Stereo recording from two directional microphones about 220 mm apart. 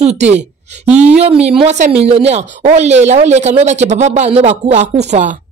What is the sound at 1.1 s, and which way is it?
A woman's voice, 30° right (ahead or behind).